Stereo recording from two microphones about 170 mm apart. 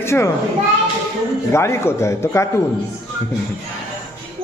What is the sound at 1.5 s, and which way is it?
Speech, 15° left (ahead or behind).